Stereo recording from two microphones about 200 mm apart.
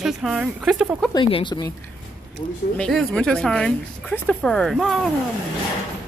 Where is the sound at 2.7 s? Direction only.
5° left (ahead or behind).